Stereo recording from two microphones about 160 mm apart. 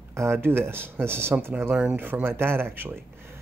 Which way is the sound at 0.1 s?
15° right (ahead or behind).